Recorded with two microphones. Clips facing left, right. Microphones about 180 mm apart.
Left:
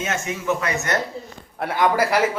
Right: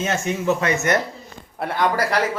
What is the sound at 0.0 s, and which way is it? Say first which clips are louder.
Speech: right 4 dB; 30° right (ahead or behind).